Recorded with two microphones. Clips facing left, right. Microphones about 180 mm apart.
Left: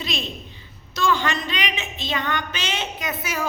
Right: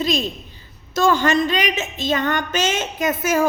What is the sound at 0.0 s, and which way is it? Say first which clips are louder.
Speech: right 9 dB; 40° right (ahead or behind).